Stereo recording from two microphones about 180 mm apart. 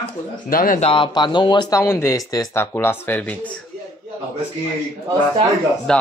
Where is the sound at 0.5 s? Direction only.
50° left (ahead or behind).